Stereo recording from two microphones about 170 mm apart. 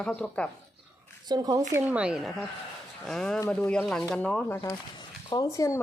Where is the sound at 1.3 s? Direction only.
20° right (ahead or behind).